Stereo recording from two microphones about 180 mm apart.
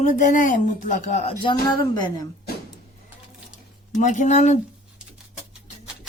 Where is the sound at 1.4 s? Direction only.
25° left (ahead or behind).